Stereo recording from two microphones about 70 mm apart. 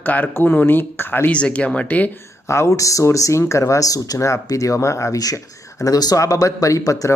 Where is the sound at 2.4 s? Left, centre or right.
Left.